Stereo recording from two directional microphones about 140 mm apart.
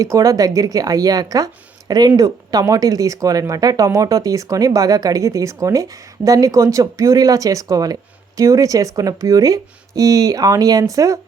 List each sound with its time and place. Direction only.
0.0 s speech: 25° right (ahead or behind)